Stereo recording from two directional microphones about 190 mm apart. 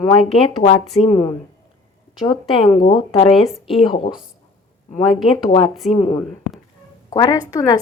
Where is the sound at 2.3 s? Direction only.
30° left (ahead or behind).